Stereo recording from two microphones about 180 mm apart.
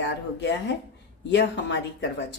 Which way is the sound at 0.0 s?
75° left (ahead or behind).